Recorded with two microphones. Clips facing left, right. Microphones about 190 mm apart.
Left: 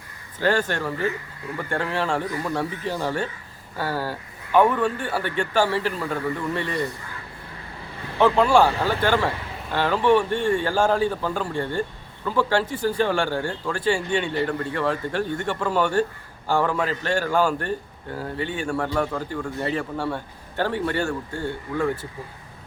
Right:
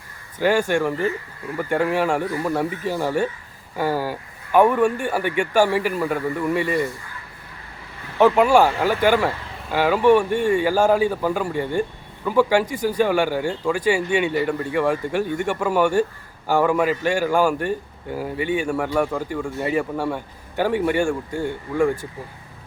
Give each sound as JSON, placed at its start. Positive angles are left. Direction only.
{"t": 0.3, "sound": "a man's voice", "side_deg": -10}
{"t": 8.2, "sound": "a man's voice", "side_deg": -10}